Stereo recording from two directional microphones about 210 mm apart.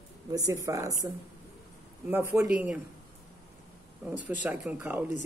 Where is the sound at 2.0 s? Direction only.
10° right (ahead or behind).